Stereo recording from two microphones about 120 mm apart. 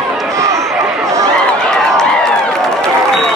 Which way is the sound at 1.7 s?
5° left (ahead or behind).